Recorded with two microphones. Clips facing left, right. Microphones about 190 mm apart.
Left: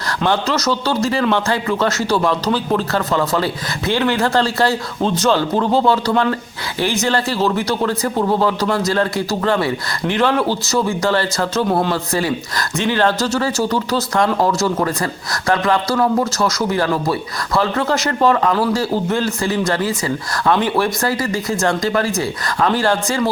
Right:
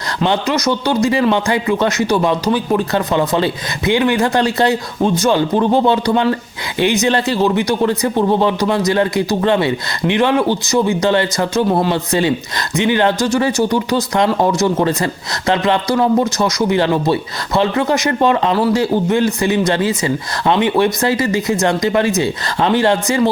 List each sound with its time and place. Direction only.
0.3 s speech: 15° right (ahead or behind)